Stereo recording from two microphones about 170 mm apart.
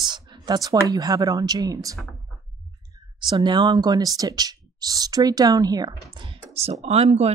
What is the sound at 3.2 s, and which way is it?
Speech, 25° right (ahead or behind).